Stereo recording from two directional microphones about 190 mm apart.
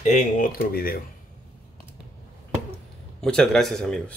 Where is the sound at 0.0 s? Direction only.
40° left (ahead or behind).